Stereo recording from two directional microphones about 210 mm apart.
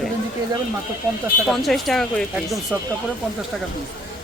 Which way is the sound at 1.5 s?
Centre (ahead or behind).